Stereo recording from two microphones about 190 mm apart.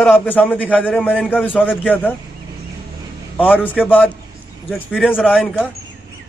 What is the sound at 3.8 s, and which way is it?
Speech, 10° left (ahead or behind).